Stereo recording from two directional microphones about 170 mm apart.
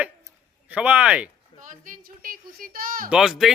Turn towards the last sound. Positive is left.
turn(degrees=-5)  # may be behind; listen again after turning